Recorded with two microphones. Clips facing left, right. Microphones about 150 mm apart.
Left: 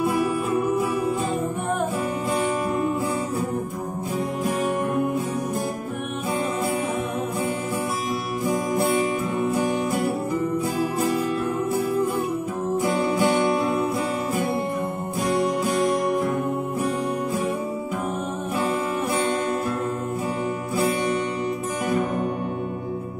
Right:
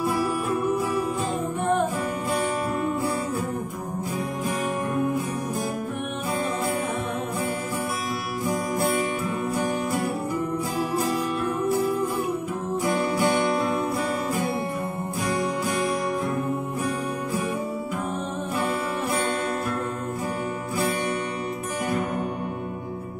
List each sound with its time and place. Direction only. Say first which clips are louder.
13.1 s music: left 3 dB; 20° left (ahead or behind)